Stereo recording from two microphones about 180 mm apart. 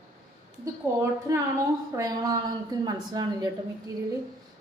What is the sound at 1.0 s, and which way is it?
A woman's voice, 15° right (ahead or behind).